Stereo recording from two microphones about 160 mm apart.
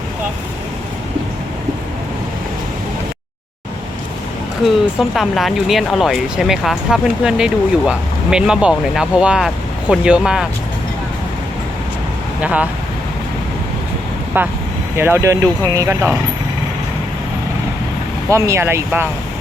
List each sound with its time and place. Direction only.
4.6 s speech: centre (ahead or behind)
12.4 s speech: 10° right (ahead or behind)
14.3 s speech: 15° right (ahead or behind)
18.3 s speech: 20° right (ahead or behind)